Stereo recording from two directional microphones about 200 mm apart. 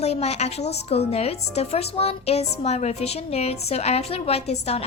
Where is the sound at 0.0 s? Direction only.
30° left (ahead or behind).